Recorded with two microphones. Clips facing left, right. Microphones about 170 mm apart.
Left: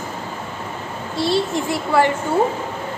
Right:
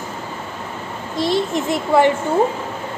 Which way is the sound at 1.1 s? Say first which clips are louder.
Right 1 dB; 15° right (ahead or behind).